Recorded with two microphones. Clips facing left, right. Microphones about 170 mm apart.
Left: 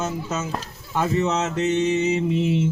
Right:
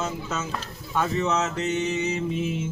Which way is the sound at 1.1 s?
20° left (ahead or behind).